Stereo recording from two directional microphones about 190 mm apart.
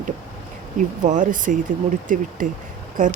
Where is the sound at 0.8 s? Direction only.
40° right (ahead or behind).